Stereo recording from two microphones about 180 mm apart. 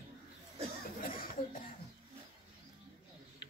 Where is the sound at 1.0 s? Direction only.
55° left (ahead or behind).